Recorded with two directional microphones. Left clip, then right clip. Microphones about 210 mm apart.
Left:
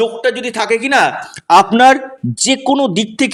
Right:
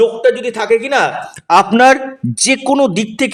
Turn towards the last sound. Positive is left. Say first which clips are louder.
# right 1 dB
turn(degrees=0)  # may be behind; listen again after turning